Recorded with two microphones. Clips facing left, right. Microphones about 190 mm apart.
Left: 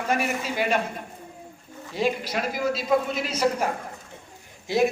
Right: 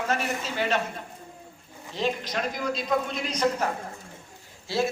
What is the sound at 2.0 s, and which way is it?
A man's voice, 10° left (ahead or behind).